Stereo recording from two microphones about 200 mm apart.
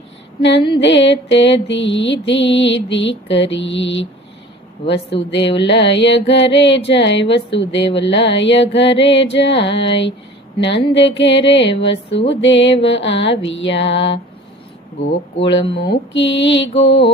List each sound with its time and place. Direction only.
0.8 s music: 65° left (ahead or behind)
15.7 s music: 60° left (ahead or behind)